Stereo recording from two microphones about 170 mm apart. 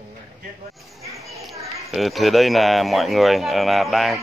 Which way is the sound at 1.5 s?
20° right (ahead or behind).